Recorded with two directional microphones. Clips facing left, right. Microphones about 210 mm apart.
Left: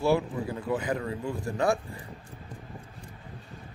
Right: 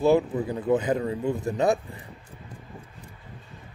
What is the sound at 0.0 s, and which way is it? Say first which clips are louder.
Speech: right 5 dB; 20° right (ahead or behind).